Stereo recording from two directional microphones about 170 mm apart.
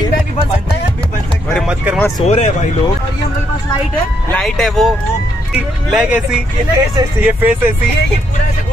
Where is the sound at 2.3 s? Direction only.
40° left (ahead or behind).